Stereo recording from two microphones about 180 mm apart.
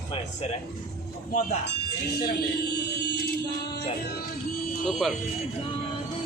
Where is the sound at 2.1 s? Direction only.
65° left (ahead or behind).